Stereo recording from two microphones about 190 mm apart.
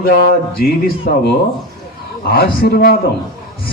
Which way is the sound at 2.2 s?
50° left (ahead or behind).